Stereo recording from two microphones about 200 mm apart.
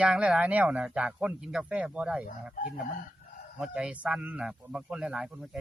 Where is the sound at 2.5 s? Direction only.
45° left (ahead or behind).